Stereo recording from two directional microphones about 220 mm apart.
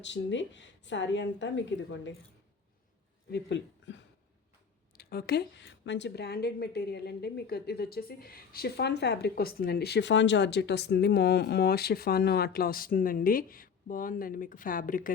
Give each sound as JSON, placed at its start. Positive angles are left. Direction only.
{"t": 0.0, "sound": "speech", "side_deg": 55}
{"t": 3.3, "sound": "a woman's voice", "side_deg": 55}